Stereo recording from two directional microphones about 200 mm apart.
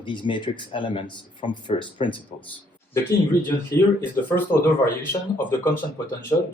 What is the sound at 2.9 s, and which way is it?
Speech, 10° left (ahead or behind).